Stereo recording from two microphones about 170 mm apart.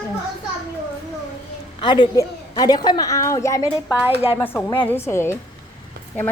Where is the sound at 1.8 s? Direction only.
25° left (ahead or behind).